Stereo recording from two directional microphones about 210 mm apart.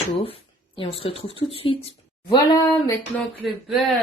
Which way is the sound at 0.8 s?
25° left (ahead or behind).